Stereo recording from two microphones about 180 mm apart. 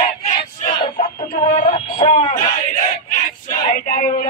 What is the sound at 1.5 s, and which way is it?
Synthetic singing, 35° left (ahead or behind).